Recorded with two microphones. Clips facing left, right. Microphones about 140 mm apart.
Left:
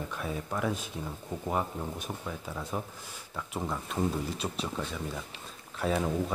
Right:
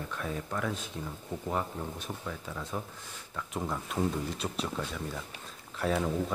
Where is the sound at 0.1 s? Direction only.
10° left (ahead or behind).